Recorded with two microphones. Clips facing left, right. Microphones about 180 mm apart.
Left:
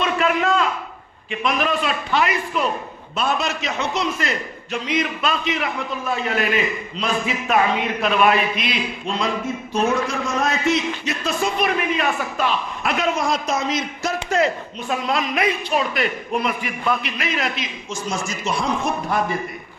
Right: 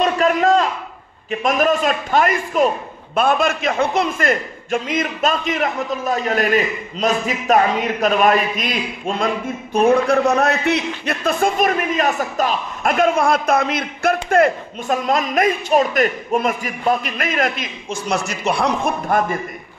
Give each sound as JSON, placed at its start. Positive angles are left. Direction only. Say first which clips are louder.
{"t": 0.0, "sound": "a sound", "louder": "right 4 dB", "side_deg": -40}
{"t": 1.3, "sound": "a man's voice", "louder": "right 5 dB", "side_deg": -45}
{"t": 18.9, "sound": "a man's voice", "louder": "right 3 dB", "side_deg": -50}